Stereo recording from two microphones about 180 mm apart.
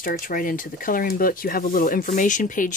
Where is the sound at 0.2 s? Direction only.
50° left (ahead or behind).